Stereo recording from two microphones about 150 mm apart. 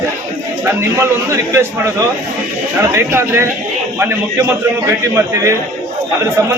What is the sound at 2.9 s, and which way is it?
A man's voice, 15° right (ahead or behind).